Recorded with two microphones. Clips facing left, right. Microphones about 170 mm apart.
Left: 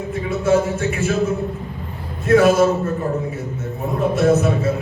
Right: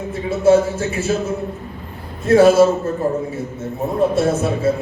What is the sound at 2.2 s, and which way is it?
Speech, 30° right (ahead or behind).